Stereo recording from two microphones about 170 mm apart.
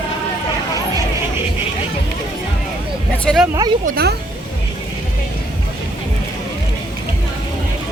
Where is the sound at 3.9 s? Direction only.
65° right (ahead or behind).